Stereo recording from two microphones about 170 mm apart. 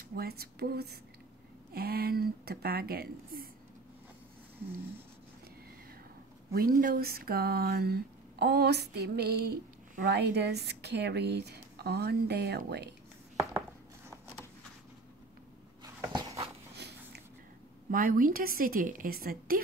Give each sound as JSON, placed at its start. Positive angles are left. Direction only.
{"t": 0.1, "sound": "speech", "side_deg": -65}
{"t": 6.5, "sound": "speech", "side_deg": -60}
{"t": 10.0, "sound": "speech", "side_deg": -80}
{"t": 15.8, "sound": "dog", "side_deg": -20}
{"t": 16.7, "sound": "a sound", "side_deg": -80}
{"t": 17.9, "sound": "speech", "side_deg": -55}